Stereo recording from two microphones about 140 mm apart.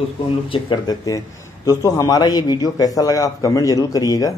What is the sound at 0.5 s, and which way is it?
A man's voice, 30° left (ahead or behind).